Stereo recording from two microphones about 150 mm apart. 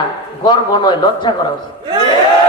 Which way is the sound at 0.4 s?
30° left (ahead or behind).